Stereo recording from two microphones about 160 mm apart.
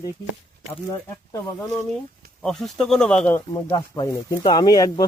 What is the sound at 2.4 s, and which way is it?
Speech, centre (ahead or behind).